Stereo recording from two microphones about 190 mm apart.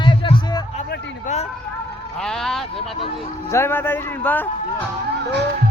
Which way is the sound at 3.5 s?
10° left (ahead or behind).